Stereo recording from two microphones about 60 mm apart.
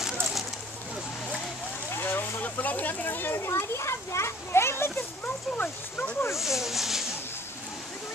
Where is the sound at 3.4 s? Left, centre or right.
Left.